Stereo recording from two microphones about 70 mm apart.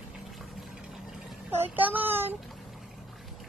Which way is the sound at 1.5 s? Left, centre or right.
Right.